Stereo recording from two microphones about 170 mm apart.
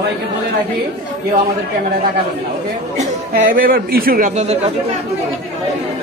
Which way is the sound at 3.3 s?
55° right (ahead or behind).